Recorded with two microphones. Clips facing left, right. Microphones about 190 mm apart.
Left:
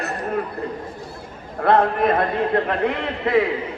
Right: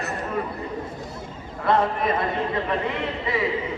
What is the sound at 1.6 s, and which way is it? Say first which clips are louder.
A man's voice: left 5 dB; 55° left (ahead or behind).